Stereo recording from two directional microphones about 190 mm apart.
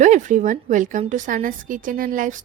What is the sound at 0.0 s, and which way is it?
A woman's voice, 40° right (ahead or behind).